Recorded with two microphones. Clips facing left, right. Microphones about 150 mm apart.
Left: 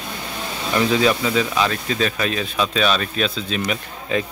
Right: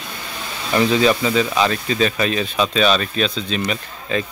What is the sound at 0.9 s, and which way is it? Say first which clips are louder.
Speech: right 1 dB; centre (ahead or behind).